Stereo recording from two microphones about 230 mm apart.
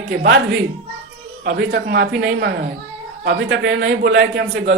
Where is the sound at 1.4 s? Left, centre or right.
Right.